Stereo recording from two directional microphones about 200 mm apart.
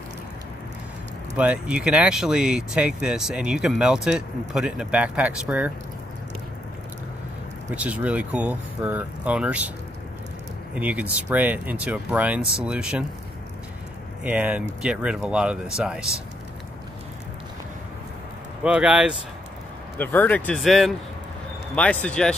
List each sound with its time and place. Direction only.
1.3 s speech: 5° right (ahead or behind)
7.7 s speech: 5° right (ahead or behind)
10.7 s speech: 5° right (ahead or behind)
14.2 s speech: 10° right (ahead or behind)
18.6 s speech: 5° right (ahead or behind)
20.0 s speech: 10° left (ahead or behind)